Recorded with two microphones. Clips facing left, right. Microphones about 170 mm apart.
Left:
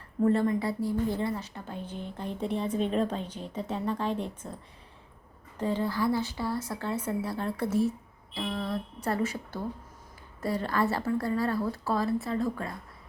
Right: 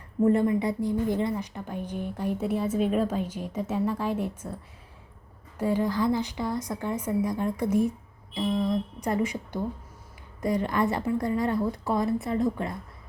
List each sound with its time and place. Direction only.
0.2 s a woman's voice: 15° right (ahead or behind)
5.5 s a woman's voice: 10° right (ahead or behind)